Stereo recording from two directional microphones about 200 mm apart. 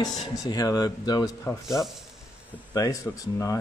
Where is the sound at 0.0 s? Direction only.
20° left (ahead or behind).